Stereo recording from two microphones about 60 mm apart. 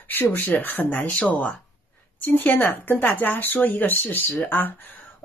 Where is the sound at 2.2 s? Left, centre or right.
Left.